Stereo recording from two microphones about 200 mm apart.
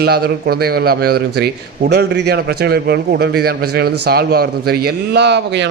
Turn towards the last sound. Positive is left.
turn(degrees=-55)  # may be behind; listen again after turning